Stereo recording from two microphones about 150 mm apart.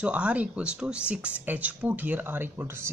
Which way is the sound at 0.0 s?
10° right (ahead or behind).